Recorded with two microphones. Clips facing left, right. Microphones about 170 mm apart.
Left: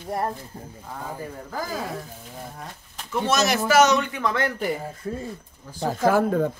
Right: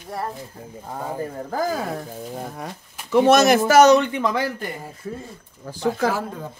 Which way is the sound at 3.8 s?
30° right (ahead or behind).